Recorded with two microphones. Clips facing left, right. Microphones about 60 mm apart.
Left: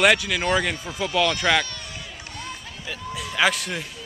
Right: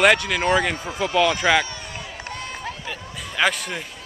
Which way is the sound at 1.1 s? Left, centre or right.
Centre.